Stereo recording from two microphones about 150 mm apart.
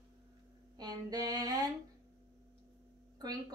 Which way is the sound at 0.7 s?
25° right (ahead or behind).